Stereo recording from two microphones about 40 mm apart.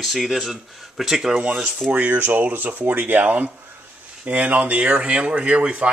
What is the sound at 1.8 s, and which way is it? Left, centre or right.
Speech, right.